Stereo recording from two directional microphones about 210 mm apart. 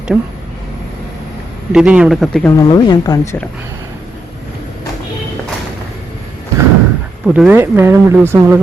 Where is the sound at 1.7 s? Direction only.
5° right (ahead or behind).